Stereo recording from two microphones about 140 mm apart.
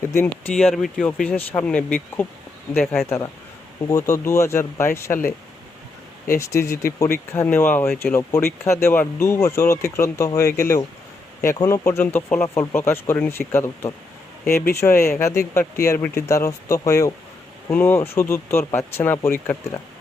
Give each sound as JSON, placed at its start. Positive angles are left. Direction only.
{"t": 0.0, "sound": "speech", "side_deg": 20}
{"t": 3.8, "sound": "speech", "side_deg": 20}
{"t": 6.4, "sound": "speech", "side_deg": 20}